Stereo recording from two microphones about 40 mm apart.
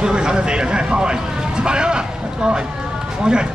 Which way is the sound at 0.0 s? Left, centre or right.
Right.